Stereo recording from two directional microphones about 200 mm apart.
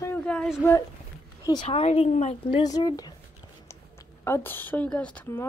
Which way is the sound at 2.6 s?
20° left (ahead or behind).